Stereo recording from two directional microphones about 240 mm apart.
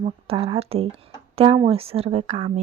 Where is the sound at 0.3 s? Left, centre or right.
Right.